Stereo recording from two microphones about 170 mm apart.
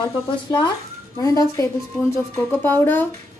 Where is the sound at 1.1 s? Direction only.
20° left (ahead or behind).